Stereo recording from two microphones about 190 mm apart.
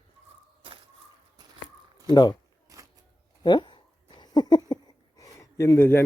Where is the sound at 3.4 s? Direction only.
25° left (ahead or behind).